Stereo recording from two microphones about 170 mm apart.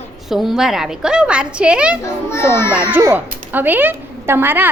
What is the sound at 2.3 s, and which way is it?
Speech, 15° left (ahead or behind).